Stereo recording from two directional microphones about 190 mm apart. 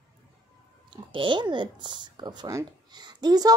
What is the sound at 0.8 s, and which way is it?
Speech, 25° right (ahead or behind).